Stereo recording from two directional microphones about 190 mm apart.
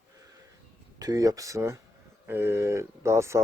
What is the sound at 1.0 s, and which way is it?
Speech, 20° right (ahead or behind).